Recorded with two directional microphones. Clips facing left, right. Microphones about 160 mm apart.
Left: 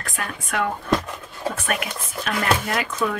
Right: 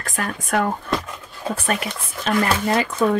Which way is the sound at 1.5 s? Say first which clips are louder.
Right 5 dB; 30° right (ahead or behind).